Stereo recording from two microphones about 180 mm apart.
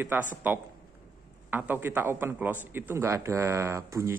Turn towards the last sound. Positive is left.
turn(degrees=-15)  # may be behind; listen again after turning